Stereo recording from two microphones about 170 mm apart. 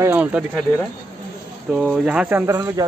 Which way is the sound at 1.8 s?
5° right (ahead or behind).